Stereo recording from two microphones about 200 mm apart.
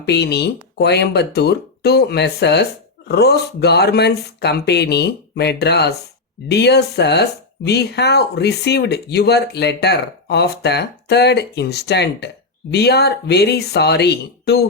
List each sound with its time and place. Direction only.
0.0 s speech: 55° left (ahead or behind)